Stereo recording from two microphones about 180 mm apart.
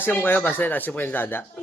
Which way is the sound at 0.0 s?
10° left (ahead or behind).